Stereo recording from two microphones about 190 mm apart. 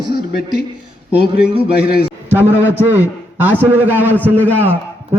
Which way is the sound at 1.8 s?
55° left (ahead or behind).